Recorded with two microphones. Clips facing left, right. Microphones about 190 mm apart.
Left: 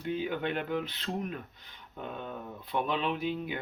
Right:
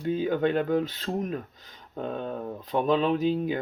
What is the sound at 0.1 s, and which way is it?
Speech, 40° right (ahead or behind).